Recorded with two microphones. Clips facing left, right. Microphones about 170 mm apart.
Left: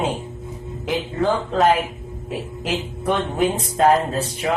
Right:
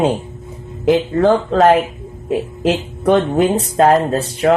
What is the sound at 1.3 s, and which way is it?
Speech, 60° right (ahead or behind).